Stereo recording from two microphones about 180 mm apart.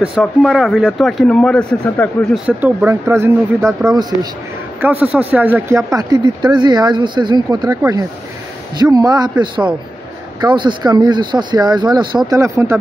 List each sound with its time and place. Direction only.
0.0 s speech: centre (ahead or behind); by 4.3 s 20° right (ahead or behind)
5.0 s a man's voice: 10° right (ahead or behind)
5.9 s speech: 20° right (ahead or behind)
10.4 s a man's voice: 25° right (ahead or behind)